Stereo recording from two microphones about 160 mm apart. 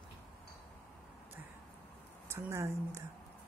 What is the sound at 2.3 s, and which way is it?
Speech, 15° right (ahead or behind).